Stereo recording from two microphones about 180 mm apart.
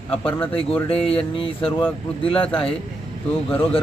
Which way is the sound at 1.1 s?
30° left (ahead or behind).